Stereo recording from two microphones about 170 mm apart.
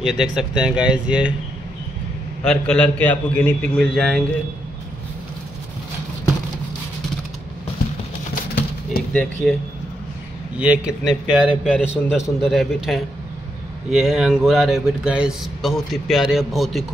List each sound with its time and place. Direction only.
0.0 s speech: 5° right (ahead or behind)
2.4 s speech: 5° left (ahead or behind)
9.1 s speech: 5° left (ahead or behind)
10.6 s speech: 5° right (ahead or behind)